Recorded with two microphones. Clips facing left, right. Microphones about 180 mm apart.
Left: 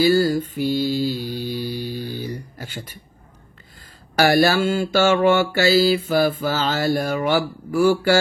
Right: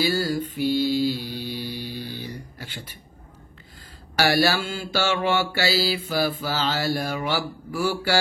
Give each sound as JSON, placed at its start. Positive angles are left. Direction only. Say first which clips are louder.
{"t": 0.0, "sound": "mantra", "louder": "left 7 dB", "side_deg": 45}
{"t": 4.2, "sound": "mantra", "louder": "left 5 dB", "side_deg": 50}